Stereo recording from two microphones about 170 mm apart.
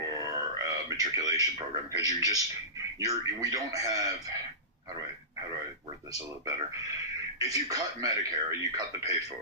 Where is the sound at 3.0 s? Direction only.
20° right (ahead or behind).